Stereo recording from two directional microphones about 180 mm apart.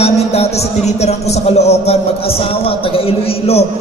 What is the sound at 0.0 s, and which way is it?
A man's voice, 35° left (ahead or behind).